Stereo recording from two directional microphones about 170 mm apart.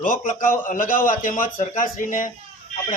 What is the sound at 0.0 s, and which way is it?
Speech, 55° left (ahead or behind).